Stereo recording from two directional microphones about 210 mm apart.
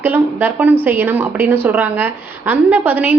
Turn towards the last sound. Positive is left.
turn(degrees=-10)  # may be behind; listen again after turning